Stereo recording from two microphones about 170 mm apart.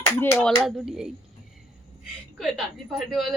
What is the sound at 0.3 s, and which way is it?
Speech, centre (ahead or behind).